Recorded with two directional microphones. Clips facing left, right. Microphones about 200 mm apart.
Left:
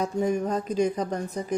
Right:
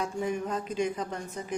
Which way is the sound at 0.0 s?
40° left (ahead or behind).